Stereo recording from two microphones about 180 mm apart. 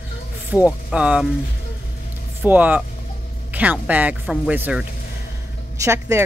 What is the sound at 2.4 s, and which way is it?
Speech, 10° right (ahead or behind).